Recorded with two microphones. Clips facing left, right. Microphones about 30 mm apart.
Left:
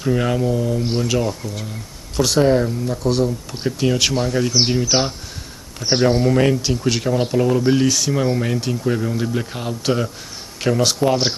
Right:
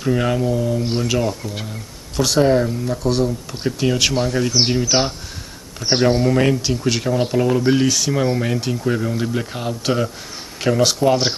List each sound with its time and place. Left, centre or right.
0.0 s speech: centre
5.9 s speech: centre